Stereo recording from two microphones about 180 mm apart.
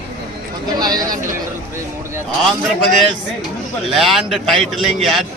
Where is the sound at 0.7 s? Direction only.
20° right (ahead or behind).